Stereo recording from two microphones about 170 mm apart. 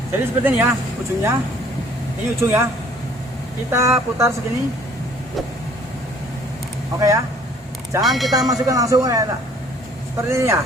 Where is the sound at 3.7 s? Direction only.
15° right (ahead or behind).